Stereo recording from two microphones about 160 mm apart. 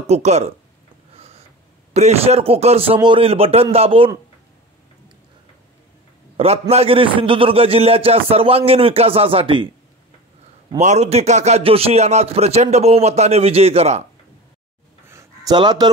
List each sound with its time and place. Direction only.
0.0 s speech: 45° right (ahead or behind)
1.1 s a sound: 40° right (ahead or behind)
2.0 s a man's voice: 40° right (ahead or behind)
6.3 s a man's voice: 40° right (ahead or behind)
10.8 s a man's voice: 45° right (ahead or behind)
15.0 s a sound: 15° right (ahead or behind)
15.5 s speech: 25° right (ahead or behind)